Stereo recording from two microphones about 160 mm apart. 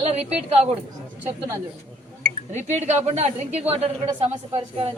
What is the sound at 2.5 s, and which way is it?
A woman's voice, 45° right (ahead or behind).